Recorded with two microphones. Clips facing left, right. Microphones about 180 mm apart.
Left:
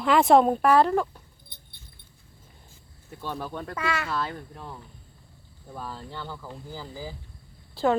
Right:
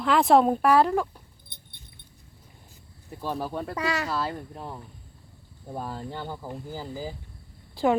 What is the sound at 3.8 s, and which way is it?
Speech, 40° right (ahead or behind).